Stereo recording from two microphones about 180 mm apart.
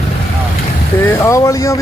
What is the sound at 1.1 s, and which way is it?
Speech, 15° left (ahead or behind).